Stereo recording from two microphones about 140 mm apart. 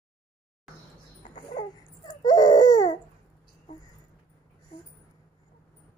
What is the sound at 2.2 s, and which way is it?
Baby cry, 30° left (ahead or behind).